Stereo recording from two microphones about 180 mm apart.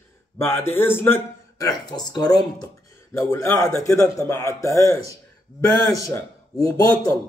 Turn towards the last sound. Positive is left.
turn(degrees=10)  # may be behind; listen again after turning